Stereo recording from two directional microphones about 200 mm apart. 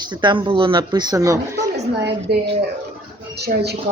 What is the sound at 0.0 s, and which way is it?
Speech, 20° right (ahead or behind).